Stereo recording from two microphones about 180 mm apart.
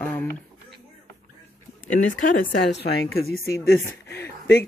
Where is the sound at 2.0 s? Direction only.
80° left.